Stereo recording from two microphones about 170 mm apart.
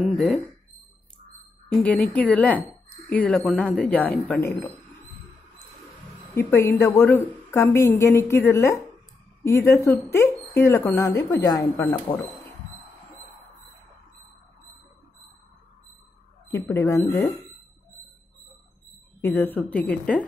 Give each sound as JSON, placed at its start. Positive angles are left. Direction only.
{"t": 0.0, "sound": "speech", "side_deg": 0}
{"t": 1.7, "sound": "a woman's voice", "side_deg": 10}
{"t": 6.3, "sound": "a woman's voice", "side_deg": 15}
{"t": 16.4, "sound": "a woman's voice", "side_deg": 15}
{"t": 19.2, "sound": "a woman's voice", "side_deg": 10}